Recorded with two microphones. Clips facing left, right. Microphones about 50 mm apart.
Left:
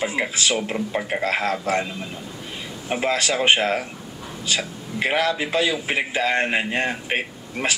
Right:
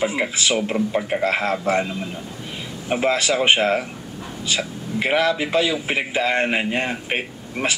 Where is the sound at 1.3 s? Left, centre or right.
Right.